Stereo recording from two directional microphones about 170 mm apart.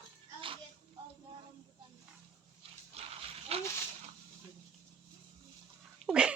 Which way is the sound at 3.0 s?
35° right (ahead or behind).